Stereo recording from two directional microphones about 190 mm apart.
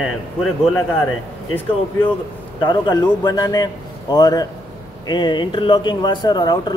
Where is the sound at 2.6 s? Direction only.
25° left (ahead or behind).